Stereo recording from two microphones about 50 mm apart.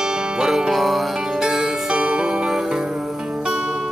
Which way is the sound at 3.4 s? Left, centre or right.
Centre.